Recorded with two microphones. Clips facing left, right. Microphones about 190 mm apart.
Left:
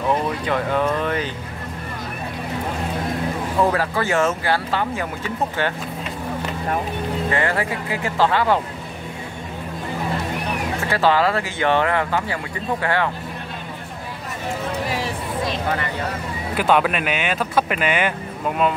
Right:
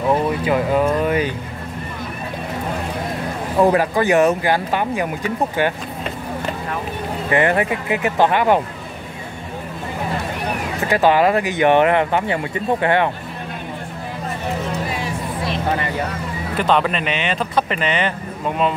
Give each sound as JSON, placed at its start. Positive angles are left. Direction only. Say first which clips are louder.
{"t": 0.5, "sound": "speech", "louder": "right 3 dB", "side_deg": -10}
{"t": 3.7, "sound": "speech", "louder": "right 5 dB", "side_deg": -15}
{"t": 7.2, "sound": "speech", "louder": "right 7 dB", "side_deg": -20}
{"t": 10.9, "sound": "speech", "louder": "right 4 dB", "side_deg": -15}
{"t": 16.5, "sound": "speech", "louder": "even", "side_deg": 5}